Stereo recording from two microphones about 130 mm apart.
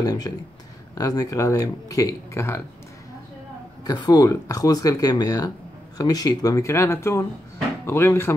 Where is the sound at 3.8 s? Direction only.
30° left (ahead or behind).